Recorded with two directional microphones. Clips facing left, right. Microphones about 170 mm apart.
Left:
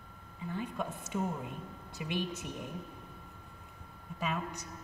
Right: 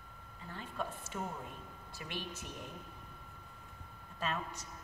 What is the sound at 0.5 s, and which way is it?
A woman's voice, 15° left (ahead or behind).